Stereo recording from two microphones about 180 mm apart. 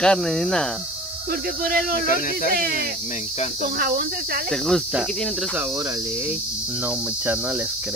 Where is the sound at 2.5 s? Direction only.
55° right (ahead or behind).